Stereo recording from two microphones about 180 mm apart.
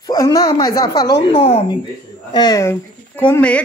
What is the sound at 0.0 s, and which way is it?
Speech, 20° left (ahead or behind).